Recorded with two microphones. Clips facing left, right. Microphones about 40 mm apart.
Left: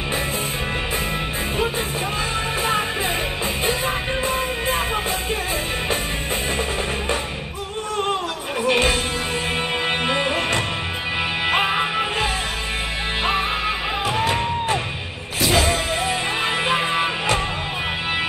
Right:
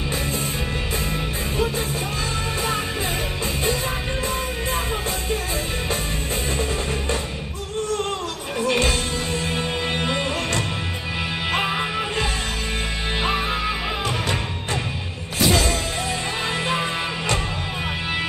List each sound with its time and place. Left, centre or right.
4.3 s music: centre
8.6 s music: centre
10.0 s music: centre
13.2 s music: centre
16.6 s music: left